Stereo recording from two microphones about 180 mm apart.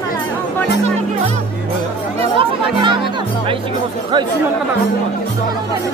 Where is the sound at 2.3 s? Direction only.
25° right (ahead or behind).